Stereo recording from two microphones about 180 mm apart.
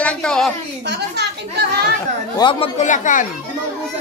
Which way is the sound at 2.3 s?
25° left (ahead or behind).